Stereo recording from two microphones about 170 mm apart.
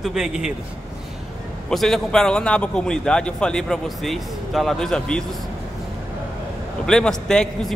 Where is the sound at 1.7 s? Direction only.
Centre (ahead or behind).